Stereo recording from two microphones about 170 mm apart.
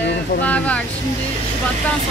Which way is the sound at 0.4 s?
10° left (ahead or behind).